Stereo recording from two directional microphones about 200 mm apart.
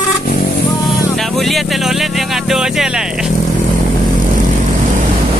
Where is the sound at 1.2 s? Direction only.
Centre (ahead or behind).